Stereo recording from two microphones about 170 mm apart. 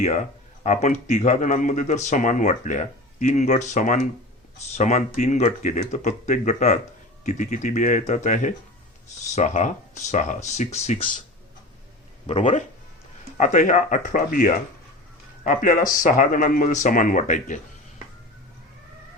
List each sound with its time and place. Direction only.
0.0 s a man's voice: 45° left (ahead or behind)
12.3 s a man's voice: 45° left (ahead or behind)